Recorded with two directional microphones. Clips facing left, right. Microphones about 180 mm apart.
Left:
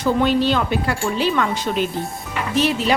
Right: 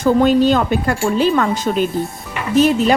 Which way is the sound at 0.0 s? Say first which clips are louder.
Right 5 dB; 45° right (ahead or behind).